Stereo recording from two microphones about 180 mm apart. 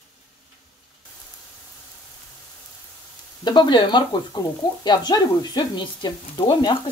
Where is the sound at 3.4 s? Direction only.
25° left (ahead or behind).